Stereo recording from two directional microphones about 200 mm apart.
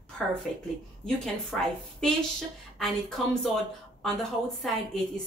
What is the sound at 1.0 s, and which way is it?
Speech, centre (ahead or behind).